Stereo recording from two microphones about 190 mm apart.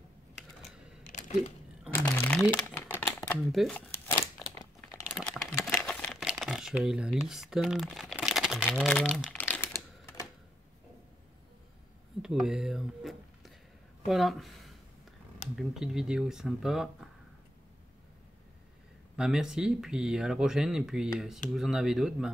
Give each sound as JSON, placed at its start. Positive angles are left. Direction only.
{"t": 2.0, "sound": "crumpling", "side_deg": 10}
{"t": 2.5, "sound": "a sound", "side_deg": 10}
{"t": 3.2, "sound": "speech", "side_deg": 0}
{"t": 4.4, "sound": "crumpling", "side_deg": 25}
{"t": 5.1, "sound": "crumpling", "side_deg": 0}
{"t": 7.2, "sound": "speech", "side_deg": 0}
{"t": 12.2, "sound": "speech", "side_deg": 0}
{"t": 19.1, "sound": "speech", "side_deg": -5}